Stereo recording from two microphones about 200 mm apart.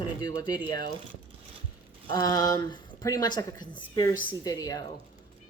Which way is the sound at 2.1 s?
20° left (ahead or behind).